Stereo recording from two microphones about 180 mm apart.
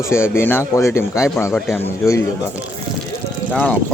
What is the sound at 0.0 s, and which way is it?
Speech, 15° left (ahead or behind).